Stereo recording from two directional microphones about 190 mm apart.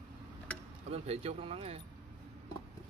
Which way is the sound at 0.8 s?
35° right (ahead or behind).